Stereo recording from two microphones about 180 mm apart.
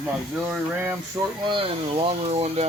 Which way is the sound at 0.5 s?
10° right (ahead or behind).